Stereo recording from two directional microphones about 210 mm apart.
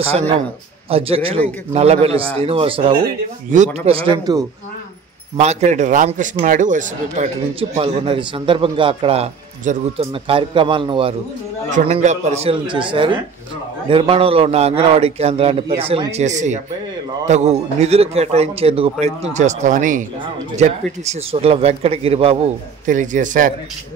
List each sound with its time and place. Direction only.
0.8 s a man's voice: 25° right (ahead or behind)
5.4 s a man's voice: 30° right (ahead or behind)
7.7 s a man's voice: 25° right (ahead or behind)